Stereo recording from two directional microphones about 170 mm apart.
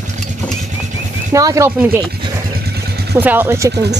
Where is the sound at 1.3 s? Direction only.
20° right (ahead or behind).